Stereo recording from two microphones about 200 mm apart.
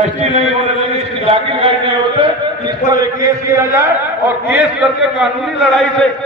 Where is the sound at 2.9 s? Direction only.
15° right (ahead or behind).